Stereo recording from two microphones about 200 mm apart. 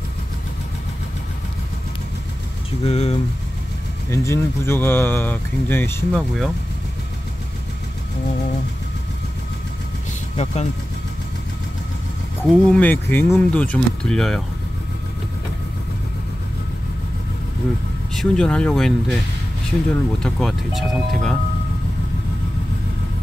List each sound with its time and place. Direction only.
2.8 s speech: 30° left (ahead or behind)
4.1 s speech: 15° left (ahead or behind)
6.1 s speech: centre (ahead or behind)
10.3 s speech: 30° left (ahead or behind)
12.6 s speech: 5° left (ahead or behind)
18.1 s speech: 5° left (ahead or behind)